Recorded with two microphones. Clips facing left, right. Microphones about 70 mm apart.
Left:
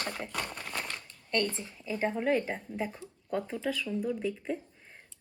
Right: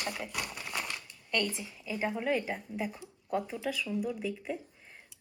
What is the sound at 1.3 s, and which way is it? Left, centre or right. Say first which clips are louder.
Speech: left 2 dB; left.